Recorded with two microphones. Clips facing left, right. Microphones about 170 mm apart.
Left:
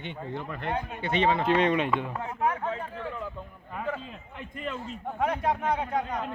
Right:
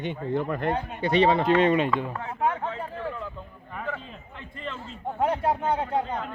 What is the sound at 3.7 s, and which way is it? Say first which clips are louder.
Speech: left 1 dB; 10° left (ahead or behind).